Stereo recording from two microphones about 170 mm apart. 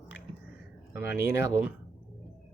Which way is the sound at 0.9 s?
15° right (ahead or behind).